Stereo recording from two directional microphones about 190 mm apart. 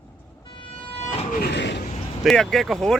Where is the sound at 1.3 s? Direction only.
55° left (ahead or behind).